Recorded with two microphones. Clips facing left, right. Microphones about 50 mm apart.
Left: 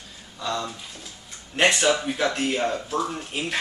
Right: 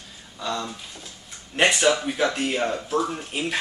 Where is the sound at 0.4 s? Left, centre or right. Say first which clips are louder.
Even; centre.